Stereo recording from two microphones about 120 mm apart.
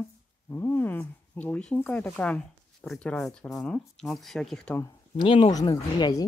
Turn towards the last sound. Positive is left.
turn(degrees=30)  # may be behind; listen again after turning